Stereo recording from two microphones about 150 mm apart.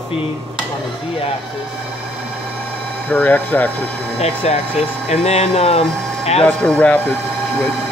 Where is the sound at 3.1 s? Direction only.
10° left (ahead or behind).